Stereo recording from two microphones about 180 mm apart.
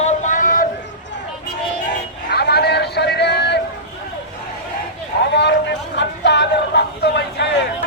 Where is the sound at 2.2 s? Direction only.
65° left (ahead or behind).